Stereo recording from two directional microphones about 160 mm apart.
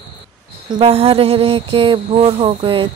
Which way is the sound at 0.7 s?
35° right (ahead or behind).